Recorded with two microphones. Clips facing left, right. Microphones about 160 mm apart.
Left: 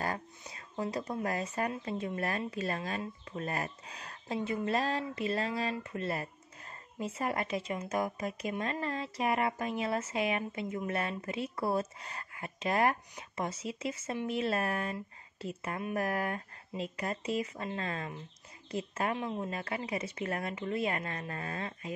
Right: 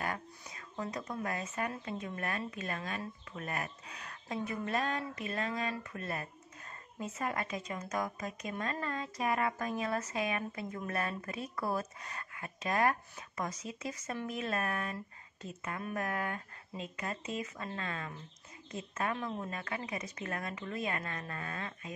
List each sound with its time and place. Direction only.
0.4 s speech: 30° left (ahead or behind)